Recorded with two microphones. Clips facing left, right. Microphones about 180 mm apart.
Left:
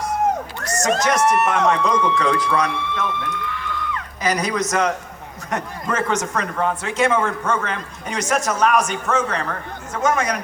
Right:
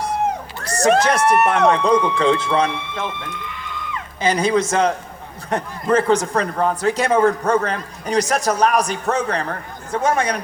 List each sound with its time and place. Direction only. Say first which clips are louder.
0.6 s crowd: right 1 dB; 35° right (ahead or behind)
1.2 s speech: right 2 dB; 60° right (ahead or behind)
1.6 s a man's voice: right 3 dB; 30° right (ahead or behind)